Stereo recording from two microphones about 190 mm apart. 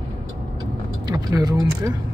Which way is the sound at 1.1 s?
20° right (ahead or behind).